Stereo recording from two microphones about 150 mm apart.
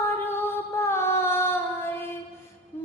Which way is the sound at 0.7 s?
15° left (ahead or behind).